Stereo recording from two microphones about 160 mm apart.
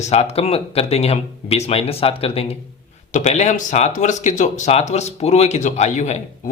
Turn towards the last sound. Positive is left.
turn(degrees=45)  # may be behind; listen again after turning